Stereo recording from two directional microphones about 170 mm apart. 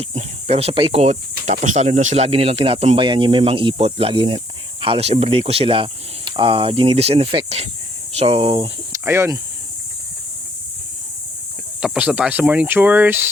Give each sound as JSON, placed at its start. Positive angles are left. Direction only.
{"t": 0.0, "sound": "speech", "side_deg": -40}
{"t": 8.9, "sound": "speech", "side_deg": -15}
{"t": 11.8, "sound": "speech", "side_deg": -10}